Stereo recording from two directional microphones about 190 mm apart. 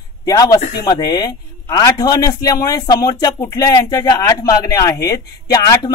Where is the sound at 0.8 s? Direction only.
20° left (ahead or behind).